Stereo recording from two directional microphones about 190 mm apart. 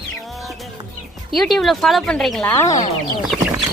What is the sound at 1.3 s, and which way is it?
A woman's voice, centre (ahead or behind).